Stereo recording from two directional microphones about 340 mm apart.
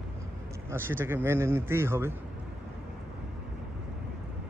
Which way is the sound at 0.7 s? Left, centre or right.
Centre.